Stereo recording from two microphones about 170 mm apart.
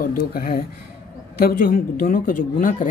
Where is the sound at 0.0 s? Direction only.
60° left (ahead or behind).